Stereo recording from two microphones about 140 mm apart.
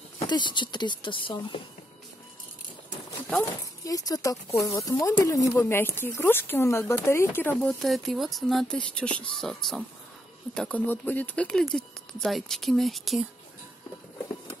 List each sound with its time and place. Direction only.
0.2 s speech: 30° left (ahead or behind)
3.8 s speech: 25° left (ahead or behind)
7.5 s speech: centre (ahead or behind)